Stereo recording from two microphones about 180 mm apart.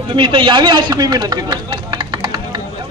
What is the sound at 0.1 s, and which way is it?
A man's voice, 30° right (ahead or behind).